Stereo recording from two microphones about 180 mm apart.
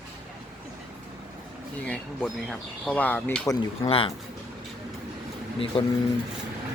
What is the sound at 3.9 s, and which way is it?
Speech, 30° left (ahead or behind).